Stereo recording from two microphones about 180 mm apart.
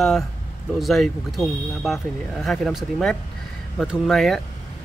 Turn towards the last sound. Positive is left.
turn(degrees=0)  # may be behind; listen again after turning